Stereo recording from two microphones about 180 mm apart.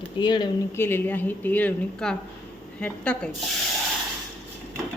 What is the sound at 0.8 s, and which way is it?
A woman's voice, 10° left (ahead or behind).